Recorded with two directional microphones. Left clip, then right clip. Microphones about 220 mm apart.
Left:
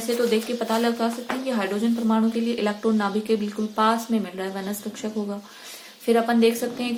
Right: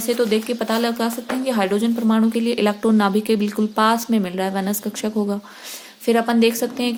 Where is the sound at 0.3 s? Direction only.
50° right (ahead or behind).